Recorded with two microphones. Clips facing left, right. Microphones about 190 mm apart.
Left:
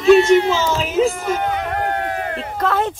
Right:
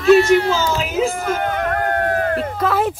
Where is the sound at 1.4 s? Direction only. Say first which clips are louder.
Right 1 dB; 50° right (ahead or behind).